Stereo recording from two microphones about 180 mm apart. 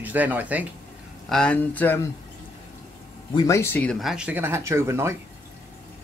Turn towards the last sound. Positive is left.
turn(degrees=-15)  # may be behind; listen again after turning